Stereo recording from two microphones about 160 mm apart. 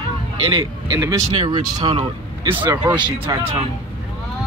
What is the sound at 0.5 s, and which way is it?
Speech, 20° right (ahead or behind).